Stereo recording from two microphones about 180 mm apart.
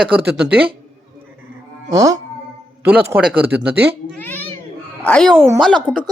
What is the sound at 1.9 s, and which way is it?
A man's voice, 20° right (ahead or behind).